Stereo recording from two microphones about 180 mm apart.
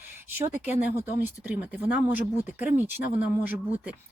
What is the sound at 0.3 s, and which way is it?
Speech, 10° right (ahead or behind).